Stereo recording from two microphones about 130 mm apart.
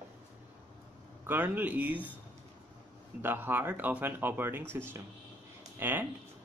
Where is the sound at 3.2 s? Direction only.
15° right (ahead or behind).